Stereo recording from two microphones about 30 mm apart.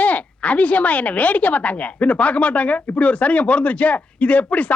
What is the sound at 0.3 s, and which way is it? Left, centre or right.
A woman's voice, left.